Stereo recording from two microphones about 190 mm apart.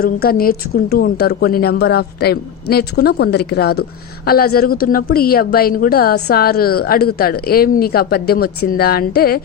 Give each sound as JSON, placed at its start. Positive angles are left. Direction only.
{"t": 0.0, "sound": "a woman's voice", "side_deg": 55}